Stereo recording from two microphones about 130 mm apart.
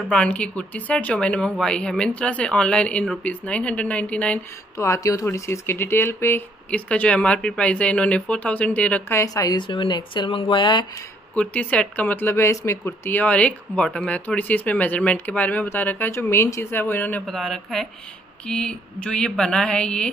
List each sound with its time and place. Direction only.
0.1 s speech: 10° left (ahead or behind)
4.7 s speech: 25° left (ahead or behind)
9.2 s speech: 25° left (ahead or behind)
11.3 s speech: 10° left (ahead or behind)
17.3 s speech: 5° left (ahead or behind)